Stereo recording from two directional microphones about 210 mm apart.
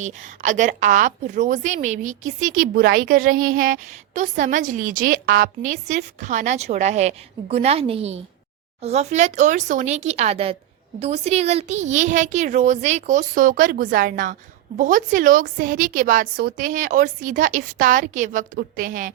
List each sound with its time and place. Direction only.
0.0 s a woman's voice: 35° right (ahead or behind)